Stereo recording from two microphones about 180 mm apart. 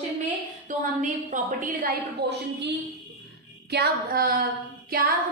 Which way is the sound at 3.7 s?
60° right (ahead or behind).